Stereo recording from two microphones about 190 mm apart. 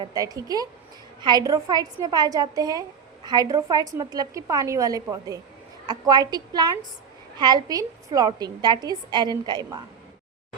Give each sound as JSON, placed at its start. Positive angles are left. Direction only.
{"t": 0.0, "sound": "a woman's voice", "side_deg": -20}